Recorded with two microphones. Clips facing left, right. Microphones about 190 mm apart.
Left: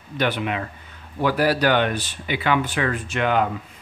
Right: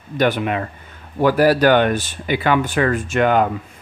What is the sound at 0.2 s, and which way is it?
Speech, 45° right (ahead or behind).